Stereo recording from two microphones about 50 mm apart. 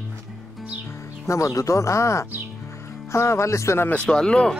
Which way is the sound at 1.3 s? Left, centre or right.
Left.